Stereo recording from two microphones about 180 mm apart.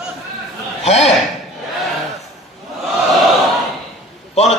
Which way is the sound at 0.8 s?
35° left (ahead or behind).